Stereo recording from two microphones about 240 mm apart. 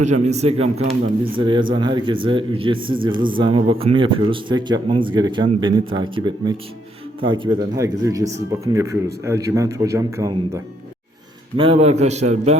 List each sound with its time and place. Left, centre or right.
0.0 s speech: right